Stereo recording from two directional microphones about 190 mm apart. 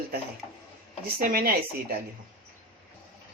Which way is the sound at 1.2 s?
50° right (ahead or behind).